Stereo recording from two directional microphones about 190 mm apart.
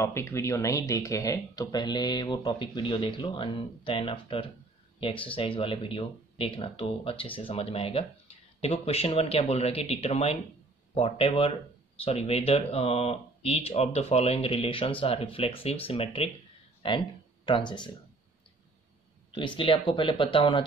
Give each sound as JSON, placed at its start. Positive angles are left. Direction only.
{"t": 0.0, "sound": "speech", "side_deg": 15}
{"t": 19.3, "sound": "speech", "side_deg": 25}